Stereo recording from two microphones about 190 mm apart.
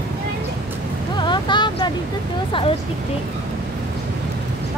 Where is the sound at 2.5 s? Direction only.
30° left (ahead or behind).